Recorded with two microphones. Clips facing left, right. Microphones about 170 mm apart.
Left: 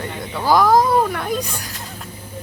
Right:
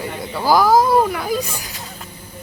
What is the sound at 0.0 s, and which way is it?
Speech, 5° right (ahead or behind).